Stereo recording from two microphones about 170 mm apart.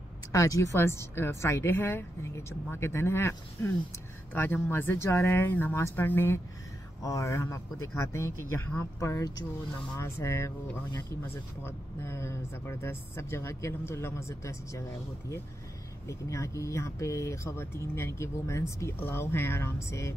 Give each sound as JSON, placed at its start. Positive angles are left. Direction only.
{"t": 0.3, "sound": "speech", "side_deg": 20}